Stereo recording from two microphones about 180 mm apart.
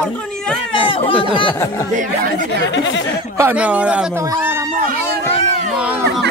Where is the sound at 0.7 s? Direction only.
30° left (ahead or behind).